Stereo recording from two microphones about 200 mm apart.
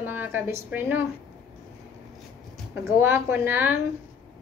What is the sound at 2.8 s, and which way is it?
Speech, 10° right (ahead or behind).